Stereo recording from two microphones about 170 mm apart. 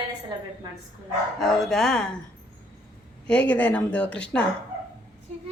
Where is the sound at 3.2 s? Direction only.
5° left (ahead or behind).